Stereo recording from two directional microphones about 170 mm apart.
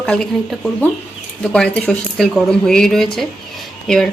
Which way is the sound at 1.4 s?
5° left (ahead or behind).